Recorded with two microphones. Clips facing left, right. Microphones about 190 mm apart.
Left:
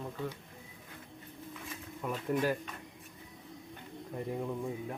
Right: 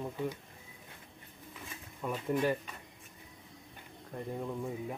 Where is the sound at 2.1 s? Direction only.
5° right (ahead or behind).